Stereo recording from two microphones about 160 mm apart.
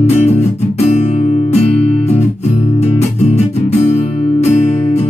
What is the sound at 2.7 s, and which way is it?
Music, 40° left (ahead or behind).